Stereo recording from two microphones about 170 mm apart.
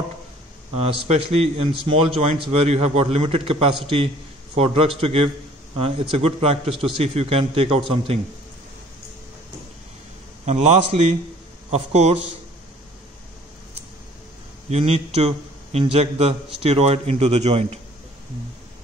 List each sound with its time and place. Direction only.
0.7 s speech: 35° right (ahead or behind)
10.4 s speech: 40° right (ahead or behind)
14.7 s speech: 35° right (ahead or behind)